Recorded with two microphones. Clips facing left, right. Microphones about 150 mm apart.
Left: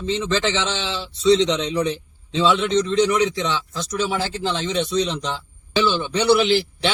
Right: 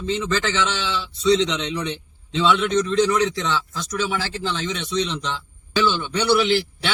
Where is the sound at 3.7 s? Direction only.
30° left (ahead or behind).